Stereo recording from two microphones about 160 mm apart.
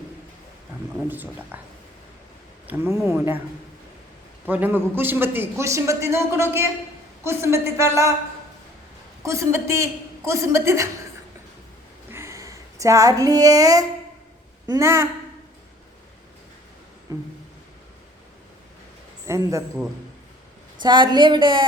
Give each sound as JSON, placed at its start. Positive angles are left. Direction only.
{"t": 1.0, "sound": "a man's voice", "side_deg": -10}
{"t": 2.6, "sound": "a man's voice", "side_deg": -15}
{"t": 4.4, "sound": "a man's voice", "side_deg": -10}
{"t": 9.2, "sound": "a man's voice", "side_deg": -20}
{"t": 12.1, "sound": "a sound", "side_deg": -20}
{"t": 14.7, "sound": "a man's voice", "side_deg": -15}
{"t": 17.1, "sound": "a woman's voice", "side_deg": -20}
{"t": 19.2, "sound": "speech", "side_deg": -20}
{"t": 20.8, "sound": "a woman's voice", "side_deg": -30}